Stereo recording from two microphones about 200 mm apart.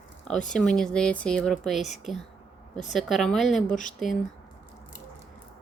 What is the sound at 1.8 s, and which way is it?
Speech, 35° left (ahead or behind).